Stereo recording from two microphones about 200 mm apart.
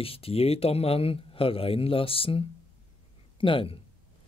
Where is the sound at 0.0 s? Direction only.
30° left (ahead or behind).